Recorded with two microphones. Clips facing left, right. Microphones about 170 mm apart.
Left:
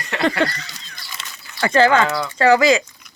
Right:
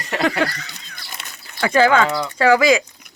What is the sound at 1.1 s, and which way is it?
Crumpling, 55° right (ahead or behind).